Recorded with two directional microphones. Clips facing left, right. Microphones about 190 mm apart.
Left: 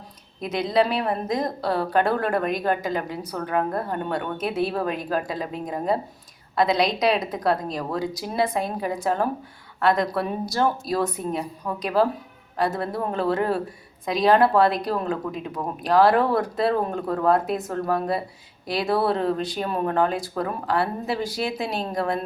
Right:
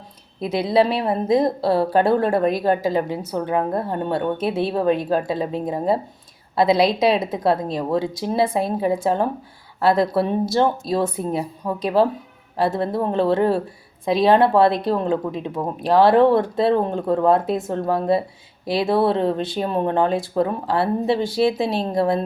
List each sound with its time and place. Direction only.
0.4 s speech: 30° right (ahead or behind)